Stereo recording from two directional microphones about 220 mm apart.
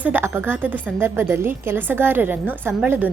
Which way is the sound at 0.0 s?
10° right (ahead or behind).